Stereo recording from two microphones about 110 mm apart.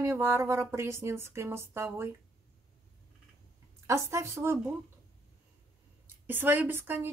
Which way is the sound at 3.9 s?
25° right (ahead or behind).